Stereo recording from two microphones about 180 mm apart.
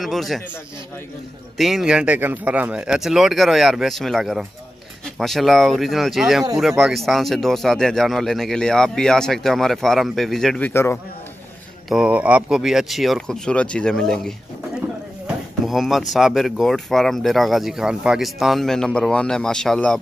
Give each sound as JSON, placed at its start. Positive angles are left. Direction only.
{"t": 0.0, "sound": "speech", "side_deg": 0}
{"t": 1.6, "sound": "speech", "side_deg": 0}
{"t": 10.7, "sound": "a man's voice", "side_deg": 15}
{"t": 11.9, "sound": "speech", "side_deg": -5}